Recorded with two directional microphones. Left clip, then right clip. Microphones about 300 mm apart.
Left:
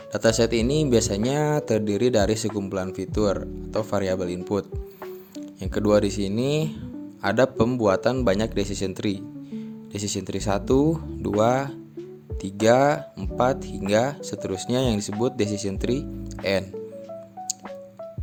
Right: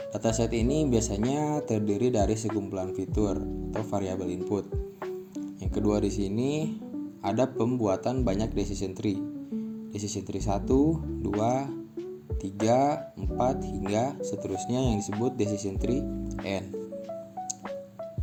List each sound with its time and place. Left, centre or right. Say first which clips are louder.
0.1 s speech: left 8 dB; left
5.7 s speech: left 7 dB; left